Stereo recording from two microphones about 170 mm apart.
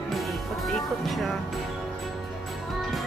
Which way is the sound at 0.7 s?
Centre (ahead or behind).